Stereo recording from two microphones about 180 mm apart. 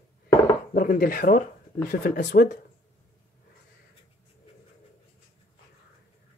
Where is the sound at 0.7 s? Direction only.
50° left (ahead or behind).